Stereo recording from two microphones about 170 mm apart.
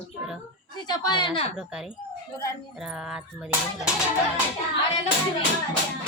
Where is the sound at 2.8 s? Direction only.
5° right (ahead or behind).